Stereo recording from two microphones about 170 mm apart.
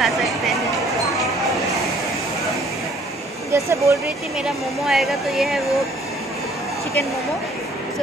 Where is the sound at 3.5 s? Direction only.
15° right (ahead or behind).